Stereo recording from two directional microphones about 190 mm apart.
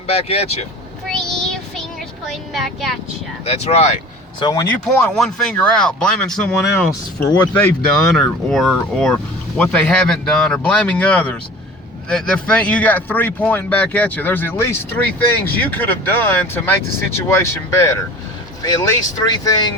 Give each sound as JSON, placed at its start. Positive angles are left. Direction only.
{"t": 0.1, "sound": "speech", "side_deg": 30}
{"t": 1.0, "sound": "child singing", "side_deg": 5}
{"t": 2.3, "sound": "speech", "side_deg": 0}
{"t": 3.4, "sound": "speech", "side_deg": 35}
{"t": 4.4, "sound": "speech", "side_deg": 20}
{"t": 4.7, "sound": "speech", "side_deg": 0}